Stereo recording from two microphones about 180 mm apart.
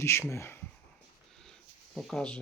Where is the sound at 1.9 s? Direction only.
5° left (ahead or behind).